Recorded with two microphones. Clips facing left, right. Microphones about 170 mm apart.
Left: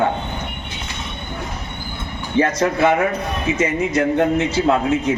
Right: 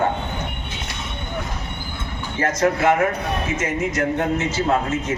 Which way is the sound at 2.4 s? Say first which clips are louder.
Left 3 dB; 65° left (ahead or behind).